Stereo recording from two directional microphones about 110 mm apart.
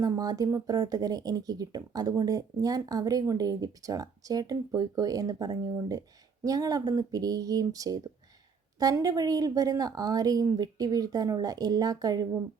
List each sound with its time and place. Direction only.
0.0 s speech: 35° right (ahead or behind)